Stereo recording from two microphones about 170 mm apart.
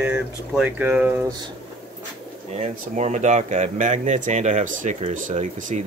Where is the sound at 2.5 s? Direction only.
40° right (ahead or behind).